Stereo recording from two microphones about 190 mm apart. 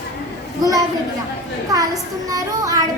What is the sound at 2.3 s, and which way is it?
Music, 20° right (ahead or behind).